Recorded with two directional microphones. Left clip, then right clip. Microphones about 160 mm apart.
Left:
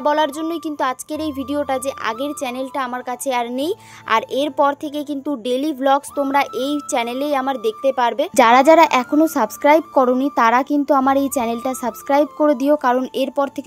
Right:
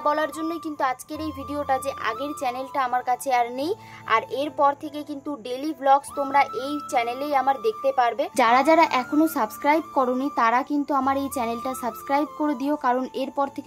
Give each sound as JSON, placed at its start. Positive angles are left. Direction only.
{"t": 0.0, "sound": "speech", "side_deg": 25}
{"t": 8.4, "sound": "a woman's voice", "side_deg": 45}